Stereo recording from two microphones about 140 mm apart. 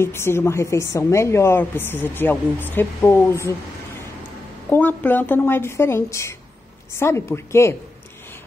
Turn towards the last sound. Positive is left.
turn(degrees=20)  # may be behind; listen again after turning